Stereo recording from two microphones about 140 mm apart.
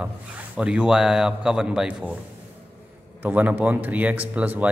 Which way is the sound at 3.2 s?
10° right (ahead or behind).